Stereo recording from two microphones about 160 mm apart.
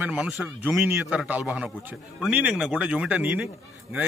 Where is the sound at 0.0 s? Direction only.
10° right (ahead or behind).